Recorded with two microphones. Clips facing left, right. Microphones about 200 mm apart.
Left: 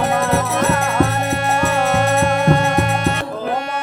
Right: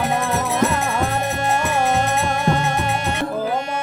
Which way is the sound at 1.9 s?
60° left (ahead or behind).